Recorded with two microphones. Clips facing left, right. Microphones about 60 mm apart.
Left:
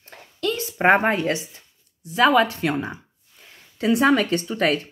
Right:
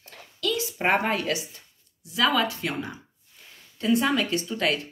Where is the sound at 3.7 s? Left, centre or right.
Left.